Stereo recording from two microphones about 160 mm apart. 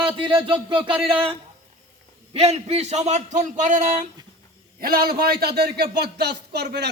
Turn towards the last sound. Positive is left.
turn(degrees=-90)